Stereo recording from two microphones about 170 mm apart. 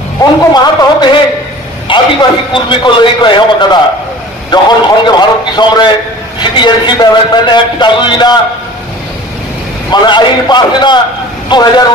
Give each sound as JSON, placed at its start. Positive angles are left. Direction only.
{"t": 0.2, "sound": "a man's voice", "side_deg": 25}
{"t": 1.9, "sound": "a sound", "side_deg": 30}
{"t": 2.5, "sound": "a man's voice", "side_deg": 30}
{"t": 9.8, "sound": "a man's voice", "side_deg": 25}